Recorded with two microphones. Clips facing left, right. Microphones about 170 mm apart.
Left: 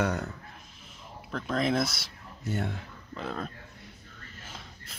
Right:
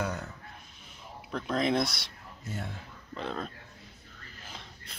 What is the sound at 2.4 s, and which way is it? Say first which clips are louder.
Speech: left 7 dB; 70° left (ahead or behind).